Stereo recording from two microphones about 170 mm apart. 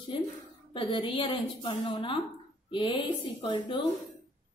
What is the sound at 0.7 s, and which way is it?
A woman's voice, 30° left (ahead or behind).